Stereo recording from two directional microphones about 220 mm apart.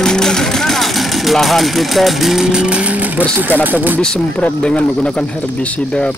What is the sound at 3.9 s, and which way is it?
Speech, 5° left (ahead or behind).